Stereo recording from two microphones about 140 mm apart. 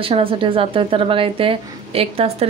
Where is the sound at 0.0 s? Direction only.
40° right (ahead or behind).